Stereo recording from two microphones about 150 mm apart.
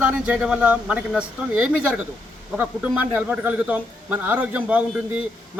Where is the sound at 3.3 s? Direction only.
10° right (ahead or behind).